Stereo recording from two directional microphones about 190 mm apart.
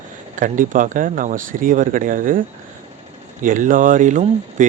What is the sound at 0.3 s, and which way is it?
Speech, 45° right (ahead or behind).